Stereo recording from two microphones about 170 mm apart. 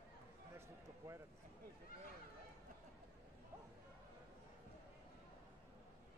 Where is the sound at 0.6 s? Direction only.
15° right (ahead or behind).